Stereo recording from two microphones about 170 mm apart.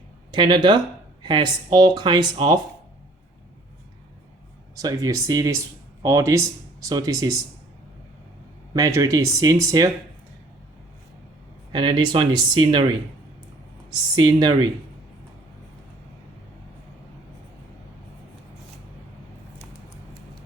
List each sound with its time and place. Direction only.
0.3 s speech: 25° right (ahead or behind)
4.7 s speech: 20° right (ahead or behind)
8.7 s speech: 20° right (ahead or behind)
11.7 s speech: 25° right (ahead or behind)
14.2 s speech: 25° right (ahead or behind)